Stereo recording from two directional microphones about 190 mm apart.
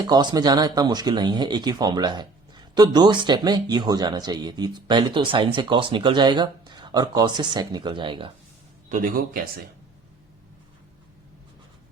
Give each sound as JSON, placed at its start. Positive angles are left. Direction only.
{"t": 0.0, "sound": "speech", "side_deg": -20}
{"t": 8.9, "sound": "a man's voice", "side_deg": -45}